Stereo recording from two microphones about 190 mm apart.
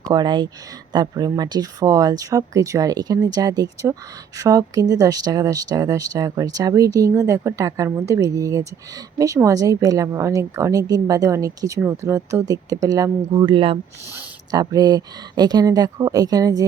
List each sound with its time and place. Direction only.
0.1 s speech: 20° right (ahead or behind)
14.1 s speech: 15° right (ahead or behind)